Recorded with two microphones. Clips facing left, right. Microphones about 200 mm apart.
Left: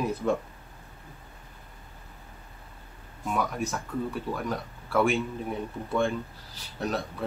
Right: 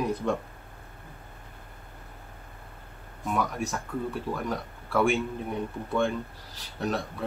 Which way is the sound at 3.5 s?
Centre (ahead or behind).